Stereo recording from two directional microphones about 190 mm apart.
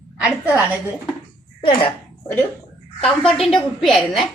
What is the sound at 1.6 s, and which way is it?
Speech, 30° left (ahead or behind).